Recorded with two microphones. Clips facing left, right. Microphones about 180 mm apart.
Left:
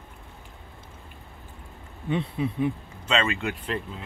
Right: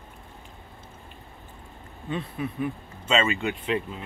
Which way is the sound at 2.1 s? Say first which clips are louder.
Left 4 dB; 20° left (ahead or behind).